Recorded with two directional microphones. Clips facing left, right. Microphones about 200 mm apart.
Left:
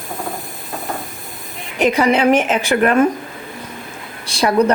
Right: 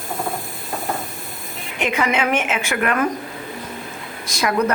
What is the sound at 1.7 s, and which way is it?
Speech, 40° left (ahead or behind).